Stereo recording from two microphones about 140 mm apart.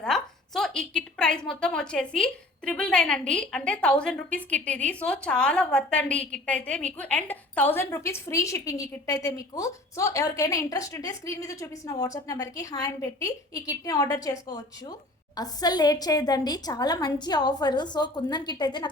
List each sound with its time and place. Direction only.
0.0 s a woman's voice: 5° left (ahead or behind); by 18.9 s 30° left (ahead or behind)